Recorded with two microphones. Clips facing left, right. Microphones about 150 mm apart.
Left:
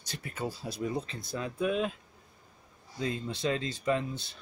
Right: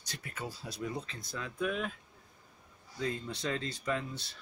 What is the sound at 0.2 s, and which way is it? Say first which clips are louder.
Speech: left 6 dB; 30° left (ahead or behind).